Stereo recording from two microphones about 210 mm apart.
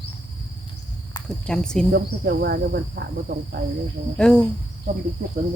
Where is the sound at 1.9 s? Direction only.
50° right (ahead or behind).